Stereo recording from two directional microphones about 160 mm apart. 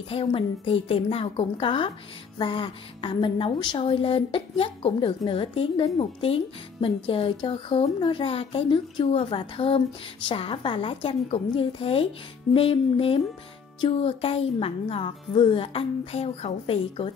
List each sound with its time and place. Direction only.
0.1 s a woman's voice: 35° left (ahead or behind)